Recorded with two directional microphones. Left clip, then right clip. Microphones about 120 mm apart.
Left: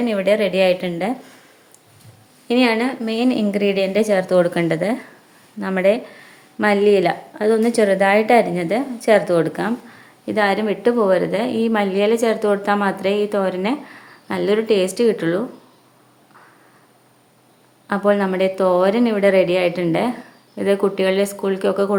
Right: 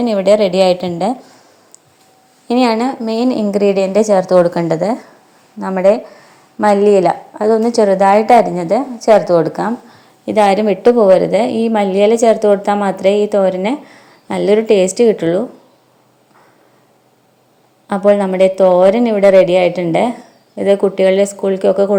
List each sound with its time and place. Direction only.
0.0 s a woman's voice: 30° right (ahead or behind)
2.5 s a woman's voice: 30° right (ahead or behind)
10.2 s a woman's voice: 40° right (ahead or behind)
17.8 s a woman's voice: 25° right (ahead or behind)